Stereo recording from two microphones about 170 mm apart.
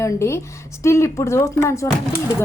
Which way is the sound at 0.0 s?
15° left (ahead or behind).